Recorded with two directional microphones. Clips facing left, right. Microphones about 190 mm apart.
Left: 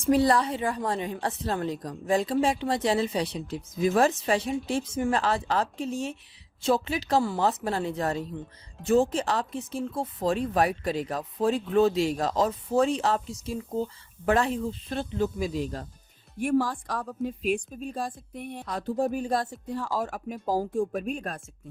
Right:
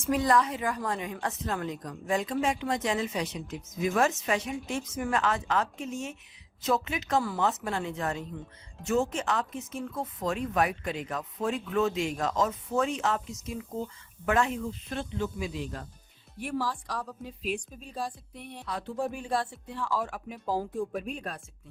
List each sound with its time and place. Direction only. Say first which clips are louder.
0.0 s speech: left 3 dB; 30° left (ahead or behind)
16.4 s a woman's voice: left 7 dB; 50° left (ahead or behind)